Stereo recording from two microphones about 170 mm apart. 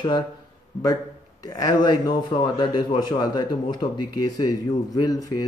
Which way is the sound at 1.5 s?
25° left (ahead or behind).